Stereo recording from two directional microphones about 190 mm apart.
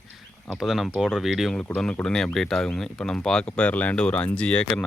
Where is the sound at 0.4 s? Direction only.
Centre (ahead or behind).